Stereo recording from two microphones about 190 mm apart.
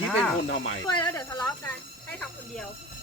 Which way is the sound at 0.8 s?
20° left (ahead or behind).